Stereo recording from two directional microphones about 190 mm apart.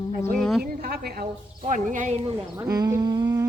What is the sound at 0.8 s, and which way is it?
Speech, 55° right (ahead or behind).